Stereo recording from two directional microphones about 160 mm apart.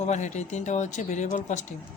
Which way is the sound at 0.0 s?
45° left (ahead or behind).